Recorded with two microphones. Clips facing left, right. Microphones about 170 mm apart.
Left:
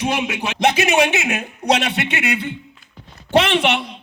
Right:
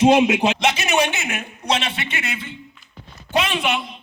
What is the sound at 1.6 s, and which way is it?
A man's voice, 70° left (ahead or behind).